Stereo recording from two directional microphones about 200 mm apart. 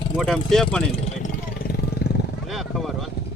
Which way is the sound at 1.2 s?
50° left (ahead or behind).